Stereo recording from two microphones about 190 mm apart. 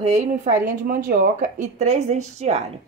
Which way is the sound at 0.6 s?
45° right (ahead or behind).